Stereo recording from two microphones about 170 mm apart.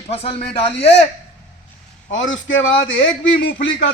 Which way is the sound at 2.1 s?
90° left.